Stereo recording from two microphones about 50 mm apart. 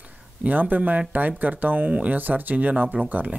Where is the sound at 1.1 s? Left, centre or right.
Right.